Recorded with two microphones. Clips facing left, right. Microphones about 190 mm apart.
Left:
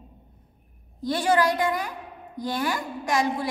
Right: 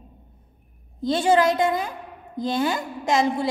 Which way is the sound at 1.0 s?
25° right (ahead or behind).